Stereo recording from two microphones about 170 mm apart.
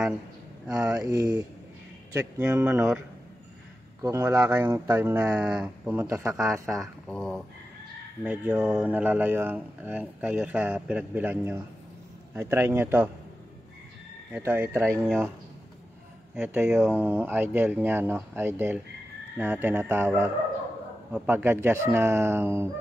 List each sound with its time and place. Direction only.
0.9 s speech: 20° right (ahead or behind)
4.0 s speech: 15° right (ahead or behind)
7.1 s speech: centre (ahead or behind)
14.3 s speech: 10° right (ahead or behind)
16.3 s speech: 10° right (ahead or behind)